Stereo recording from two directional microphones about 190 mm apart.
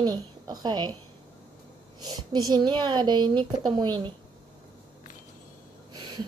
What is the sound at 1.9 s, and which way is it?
A woman's voice, 20° right (ahead or behind).